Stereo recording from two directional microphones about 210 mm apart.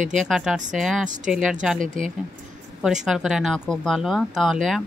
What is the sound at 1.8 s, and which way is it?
Speech, 40° right (ahead or behind).